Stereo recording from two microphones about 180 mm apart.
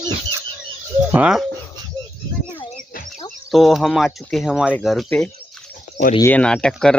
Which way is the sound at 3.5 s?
Centre (ahead or behind).